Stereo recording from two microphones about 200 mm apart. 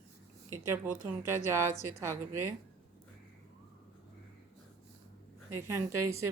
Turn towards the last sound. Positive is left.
turn(degrees=-15)  # may be behind; listen again after turning